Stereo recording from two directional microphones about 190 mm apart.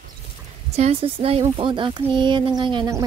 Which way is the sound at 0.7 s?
30° right (ahead or behind).